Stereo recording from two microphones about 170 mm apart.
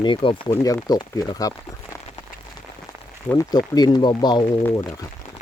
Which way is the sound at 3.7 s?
25° left (ahead or behind).